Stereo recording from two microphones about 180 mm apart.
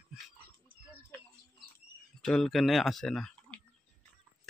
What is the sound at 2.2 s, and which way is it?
Speech, centre (ahead or behind).